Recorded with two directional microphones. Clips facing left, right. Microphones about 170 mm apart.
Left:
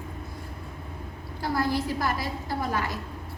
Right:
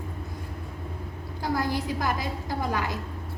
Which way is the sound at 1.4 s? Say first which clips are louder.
Left 1 dB; 15° right (ahead or behind).